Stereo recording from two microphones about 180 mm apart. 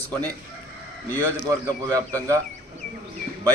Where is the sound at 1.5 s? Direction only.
20° right (ahead or behind).